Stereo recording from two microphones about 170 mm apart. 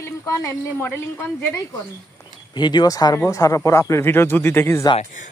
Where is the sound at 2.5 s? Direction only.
25° left (ahead or behind).